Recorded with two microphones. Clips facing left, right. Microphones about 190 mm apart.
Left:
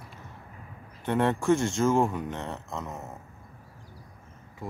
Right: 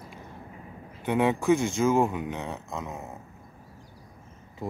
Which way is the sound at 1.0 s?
5° right (ahead or behind).